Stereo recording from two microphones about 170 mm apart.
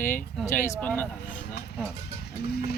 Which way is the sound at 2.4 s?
70° left (ahead or behind).